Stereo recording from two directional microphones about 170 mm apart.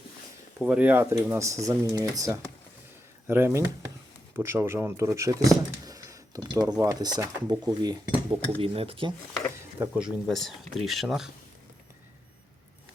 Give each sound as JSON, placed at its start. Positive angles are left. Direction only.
{"t": 0.6, "sound": "speech", "side_deg": -10}
{"t": 9.6, "sound": "stir", "side_deg": -15}
{"t": 10.0, "sound": "speech", "side_deg": 0}